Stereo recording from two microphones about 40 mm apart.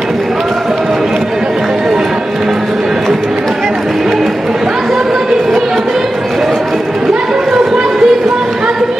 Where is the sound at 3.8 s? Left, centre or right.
Centre.